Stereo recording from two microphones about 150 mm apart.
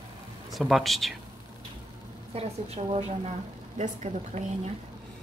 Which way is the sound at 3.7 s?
55° right (ahead or behind).